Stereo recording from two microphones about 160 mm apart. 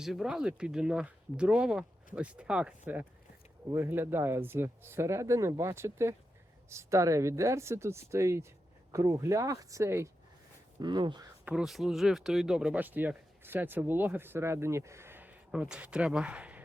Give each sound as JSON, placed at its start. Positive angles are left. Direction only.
{"t": 0.0, "sound": "speech", "side_deg": -5}
{"t": 10.8, "sound": "speech", "side_deg": -30}
{"t": 11.4, "sound": "speech", "side_deg": -5}